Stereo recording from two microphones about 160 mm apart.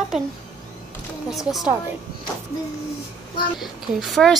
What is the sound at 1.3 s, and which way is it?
Speech, centre (ahead or behind).